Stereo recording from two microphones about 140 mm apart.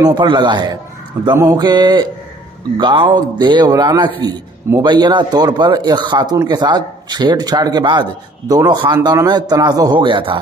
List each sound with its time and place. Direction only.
0.0 s speech: 30° right (ahead or behind)
1.3 s a man's voice: 20° right (ahead or behind)
1.6 s a man's voice: 30° right (ahead or behind)